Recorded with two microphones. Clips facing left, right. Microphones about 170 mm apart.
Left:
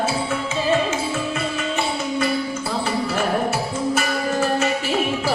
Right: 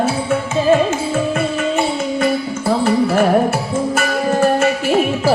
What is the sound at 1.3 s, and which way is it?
Music, 50° right (ahead or behind).